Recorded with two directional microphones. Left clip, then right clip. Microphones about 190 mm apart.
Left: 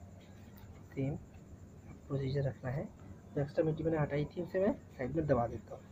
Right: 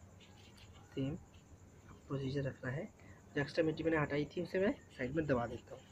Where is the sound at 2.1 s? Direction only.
25° right (ahead or behind).